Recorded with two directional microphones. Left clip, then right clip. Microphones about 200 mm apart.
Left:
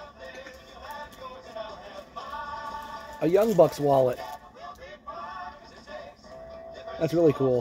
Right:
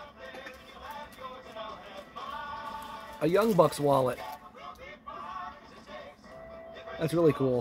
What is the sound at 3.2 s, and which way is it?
Speech, centre (ahead or behind).